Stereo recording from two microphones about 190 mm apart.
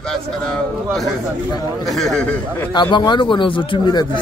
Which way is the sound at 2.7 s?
25° left (ahead or behind).